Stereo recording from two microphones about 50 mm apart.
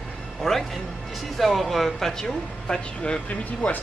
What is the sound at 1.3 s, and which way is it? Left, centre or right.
Speech, centre.